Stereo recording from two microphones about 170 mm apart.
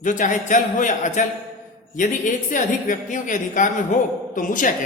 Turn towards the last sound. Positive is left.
turn(degrees=50)  # may be behind; listen again after turning